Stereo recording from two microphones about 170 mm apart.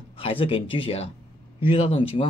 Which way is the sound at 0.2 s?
30° left (ahead or behind).